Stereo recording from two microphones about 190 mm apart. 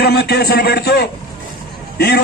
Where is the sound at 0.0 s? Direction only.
55° left (ahead or behind).